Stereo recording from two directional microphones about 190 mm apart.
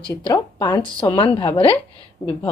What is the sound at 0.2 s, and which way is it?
Speech, 20° left (ahead or behind).